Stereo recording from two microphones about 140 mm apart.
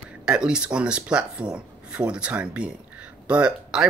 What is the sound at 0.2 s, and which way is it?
Speech, 5° right (ahead or behind).